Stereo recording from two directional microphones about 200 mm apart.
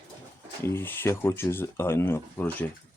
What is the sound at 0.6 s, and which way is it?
Speech, 10° left (ahead or behind).